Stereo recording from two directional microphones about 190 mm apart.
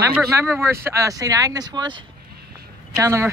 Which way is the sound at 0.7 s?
15° right (ahead or behind).